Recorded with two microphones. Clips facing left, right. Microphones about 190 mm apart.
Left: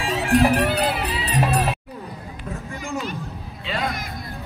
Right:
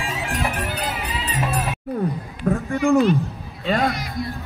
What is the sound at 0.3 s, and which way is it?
Music, 35° left (ahead or behind).